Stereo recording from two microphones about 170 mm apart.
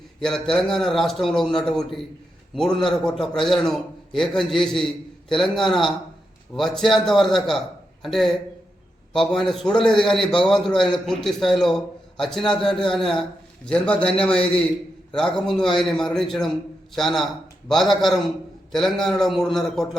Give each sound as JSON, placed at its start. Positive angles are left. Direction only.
{"t": 0.2, "sound": "a man's voice", "side_deg": 5}